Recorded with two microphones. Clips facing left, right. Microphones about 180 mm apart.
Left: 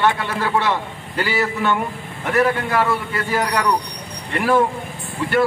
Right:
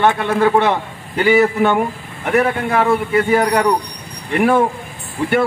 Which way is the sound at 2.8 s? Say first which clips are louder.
Right 6 dB; 55° right (ahead or behind).